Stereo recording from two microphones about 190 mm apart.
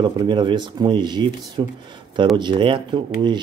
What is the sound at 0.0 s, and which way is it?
Speech, 25° right (ahead or behind).